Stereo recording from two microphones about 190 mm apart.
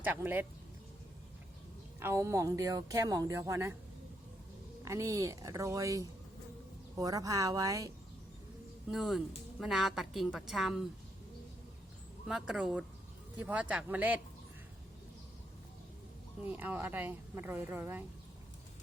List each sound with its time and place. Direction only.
0.0 s speech: 10° right (ahead or behind)
2.0 s speech: 15° right (ahead or behind)
4.9 s speech: 15° right (ahead or behind)
8.9 s a woman's voice: centre (ahead or behind)
12.2 s a woman's voice: 5° right (ahead or behind)
16.4 s speech: 10° right (ahead or behind)